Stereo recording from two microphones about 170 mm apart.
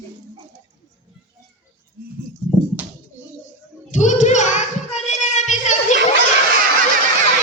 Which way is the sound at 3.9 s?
45° left (ahead or behind).